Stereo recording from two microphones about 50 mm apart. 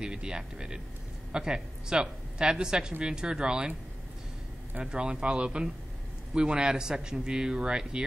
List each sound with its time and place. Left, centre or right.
0.0 s speech: centre
4.9 s speech: centre